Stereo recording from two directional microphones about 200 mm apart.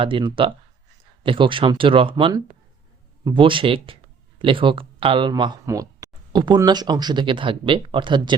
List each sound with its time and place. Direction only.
0.0 s speech: 25° right (ahead or behind)